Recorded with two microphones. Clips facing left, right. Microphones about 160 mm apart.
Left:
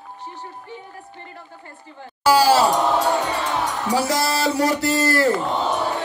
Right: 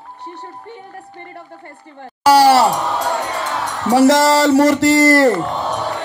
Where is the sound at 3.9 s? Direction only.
90° right.